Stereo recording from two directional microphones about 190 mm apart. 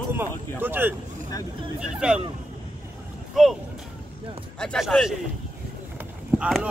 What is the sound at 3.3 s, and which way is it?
Speech, centre (ahead or behind).